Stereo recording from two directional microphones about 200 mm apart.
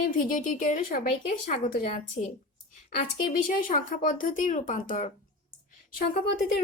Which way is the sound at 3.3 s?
40° left (ahead or behind).